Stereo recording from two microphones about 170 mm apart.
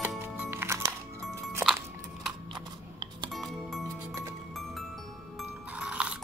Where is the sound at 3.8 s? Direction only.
15° right (ahead or behind).